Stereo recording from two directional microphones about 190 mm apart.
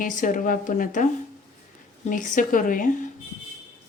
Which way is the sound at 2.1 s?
45° left (ahead or behind).